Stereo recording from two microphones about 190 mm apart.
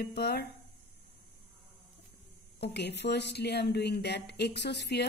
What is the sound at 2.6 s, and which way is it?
Speech, 60° left (ahead or behind).